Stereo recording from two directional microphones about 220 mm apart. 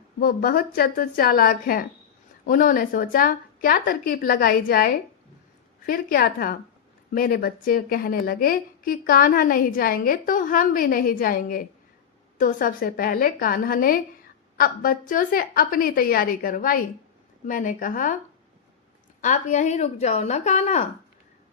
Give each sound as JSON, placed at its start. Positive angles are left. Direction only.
{"t": 0.2, "sound": "a woman's voice", "side_deg": 40}
{"t": 19.2, "sound": "a woman's voice", "side_deg": 35}